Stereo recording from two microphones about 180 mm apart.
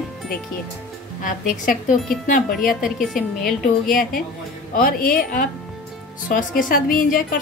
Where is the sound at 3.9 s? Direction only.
50° left (ahead or behind).